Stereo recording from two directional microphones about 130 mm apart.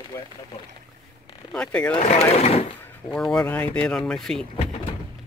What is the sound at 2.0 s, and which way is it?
Speech, 55° left (ahead or behind).